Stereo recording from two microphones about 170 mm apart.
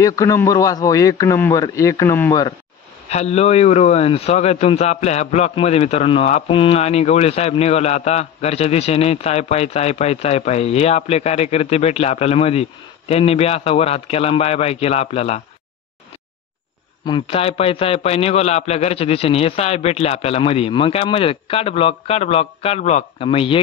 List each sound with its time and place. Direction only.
0.0 s a man's voice: 20° left (ahead or behind)
3.1 s a man's voice: 40° left (ahead or behind)
17.0 s a man's voice: 30° left (ahead or behind)